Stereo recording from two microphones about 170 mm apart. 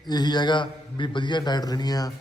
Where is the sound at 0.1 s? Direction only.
25° left (ahead or behind).